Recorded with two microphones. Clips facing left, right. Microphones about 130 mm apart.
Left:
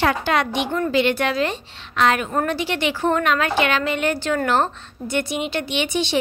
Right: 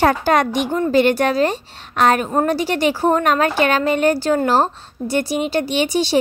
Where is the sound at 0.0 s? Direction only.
45° right (ahead or behind).